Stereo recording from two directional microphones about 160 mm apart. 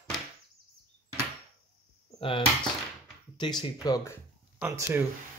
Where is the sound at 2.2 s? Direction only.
35° left (ahead or behind).